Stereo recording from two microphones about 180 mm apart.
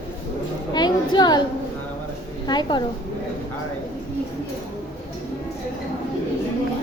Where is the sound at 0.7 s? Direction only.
25° left (ahead or behind).